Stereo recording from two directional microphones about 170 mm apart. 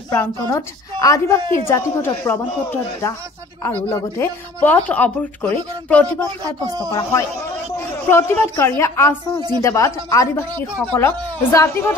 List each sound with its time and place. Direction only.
0.1 s a woman's voice: 20° left (ahead or behind)
3.6 s a woman's voice: 15° left (ahead or behind)
6.9 s a woman's voice: 20° left (ahead or behind)